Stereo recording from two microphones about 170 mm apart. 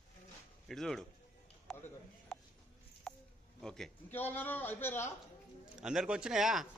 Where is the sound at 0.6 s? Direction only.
Centre (ahead or behind).